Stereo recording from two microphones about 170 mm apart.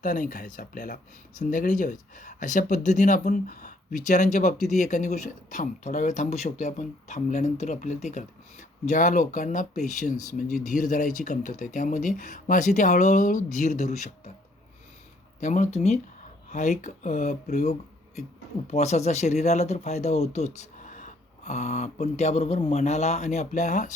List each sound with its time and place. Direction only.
0.0 s speech: 50° left (ahead or behind)
15.4 s speech: 45° left (ahead or behind)